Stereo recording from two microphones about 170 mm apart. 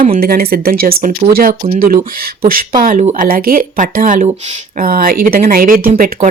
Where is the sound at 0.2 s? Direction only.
60° right (ahead or behind); by 3.2 s 45° right (ahead or behind).